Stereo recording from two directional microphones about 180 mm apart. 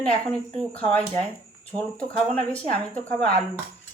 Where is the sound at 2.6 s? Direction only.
10° left (ahead or behind).